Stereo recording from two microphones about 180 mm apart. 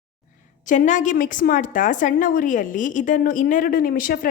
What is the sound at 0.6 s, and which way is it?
A woman's voice, 45° left (ahead or behind).